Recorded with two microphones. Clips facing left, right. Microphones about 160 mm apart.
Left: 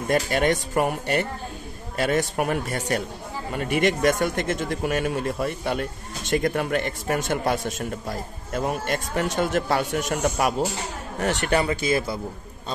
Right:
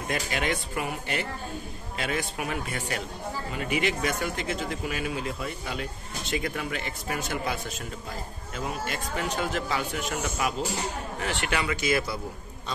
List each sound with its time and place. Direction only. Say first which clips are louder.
0.1 s a man's voice: left 8 dB; 45° left (ahead or behind)
11.1 s speech: left 8 dB; 40° left (ahead or behind)